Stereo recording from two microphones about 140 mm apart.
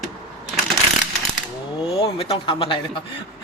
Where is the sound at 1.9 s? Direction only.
40° left (ahead or behind).